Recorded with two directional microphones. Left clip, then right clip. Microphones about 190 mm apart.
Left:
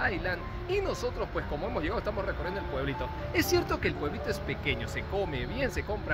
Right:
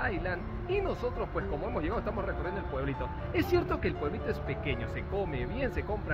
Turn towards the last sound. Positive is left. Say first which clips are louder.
# left 2 dB
turn(degrees=15)  # may be behind; listen again after turning